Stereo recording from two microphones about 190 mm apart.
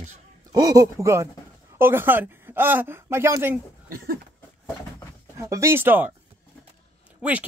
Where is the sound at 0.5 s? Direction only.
20° right (ahead or behind).